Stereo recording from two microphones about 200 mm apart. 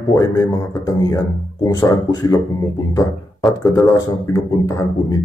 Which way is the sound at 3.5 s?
20° left (ahead or behind).